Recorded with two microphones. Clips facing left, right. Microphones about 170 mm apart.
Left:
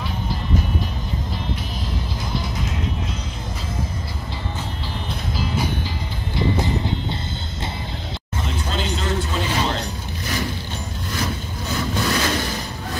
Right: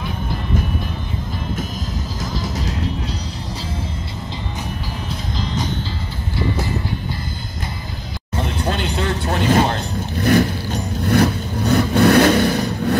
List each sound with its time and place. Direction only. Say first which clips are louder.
8.5 s vehicle: right 3 dB; 60° right (ahead or behind)